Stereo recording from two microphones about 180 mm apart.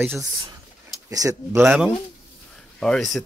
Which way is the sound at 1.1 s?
20° right (ahead or behind).